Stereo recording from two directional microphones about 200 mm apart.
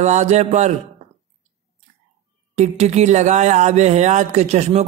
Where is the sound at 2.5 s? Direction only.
35° right (ahead or behind).